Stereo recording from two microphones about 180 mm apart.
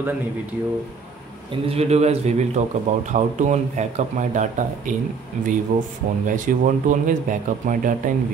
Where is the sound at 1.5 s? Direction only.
35° right (ahead or behind).